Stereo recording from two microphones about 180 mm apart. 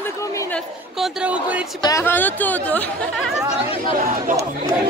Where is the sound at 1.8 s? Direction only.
15° left (ahead or behind).